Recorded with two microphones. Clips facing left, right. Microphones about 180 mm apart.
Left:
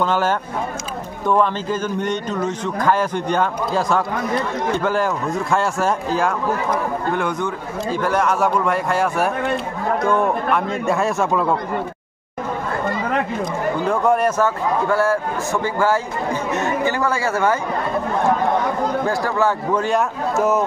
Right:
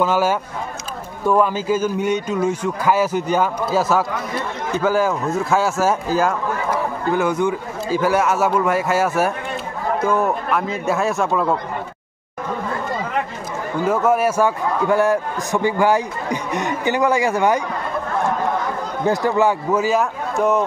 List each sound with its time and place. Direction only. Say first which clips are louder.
0.0 s a man's voice: right 1 dB; 10° right (ahead or behind)
13.8 s speech: right 1 dB; 5° right (ahead or behind)
14.9 s a man's voice: right 4 dB; 15° right (ahead or behind)
19.0 s speech: right 6 dB; 20° right (ahead or behind)
19.7 s speech: right 1 dB; 5° right (ahead or behind)